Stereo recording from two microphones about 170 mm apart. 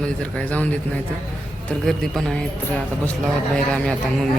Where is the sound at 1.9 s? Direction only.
Centre (ahead or behind).